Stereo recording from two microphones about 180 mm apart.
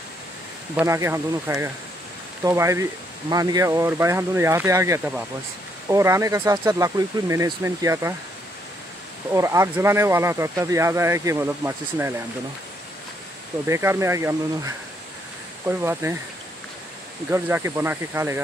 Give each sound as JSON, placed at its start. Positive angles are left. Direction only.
{"t": 0.7, "sound": "speech", "side_deg": -15}
{"t": 9.3, "sound": "speech", "side_deg": -15}
{"t": 13.7, "sound": "speech", "side_deg": -15}
{"t": 17.3, "sound": "speech", "side_deg": -10}